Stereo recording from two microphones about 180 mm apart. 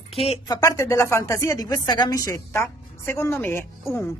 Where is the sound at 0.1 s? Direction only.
35° left (ahead or behind).